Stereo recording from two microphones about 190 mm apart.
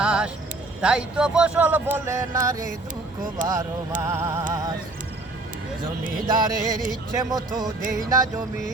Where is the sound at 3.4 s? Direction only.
45° right (ahead or behind).